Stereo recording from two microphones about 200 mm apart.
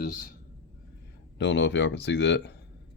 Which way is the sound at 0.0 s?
40° left (ahead or behind).